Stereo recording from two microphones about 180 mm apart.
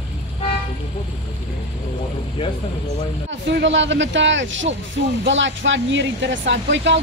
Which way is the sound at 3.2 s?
90° right.